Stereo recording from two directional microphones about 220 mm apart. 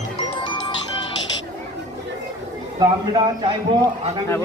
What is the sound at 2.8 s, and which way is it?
Speech, 20° right (ahead or behind).